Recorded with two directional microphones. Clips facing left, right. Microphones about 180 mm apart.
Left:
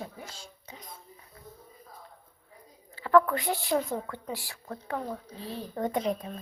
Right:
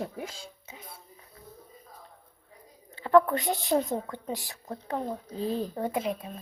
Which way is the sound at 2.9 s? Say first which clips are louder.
Right 1 dB; 25° right (ahead or behind).